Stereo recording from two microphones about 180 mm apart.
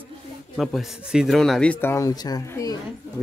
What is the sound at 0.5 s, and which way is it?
Speech, centre (ahead or behind).